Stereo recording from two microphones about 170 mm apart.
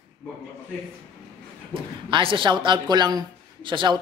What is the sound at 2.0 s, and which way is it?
Speech, 30° right (ahead or behind).